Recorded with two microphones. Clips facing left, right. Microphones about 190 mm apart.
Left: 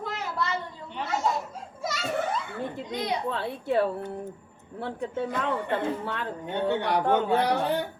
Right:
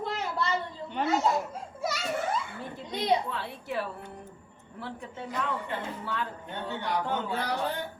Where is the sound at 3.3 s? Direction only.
60° left (ahead or behind).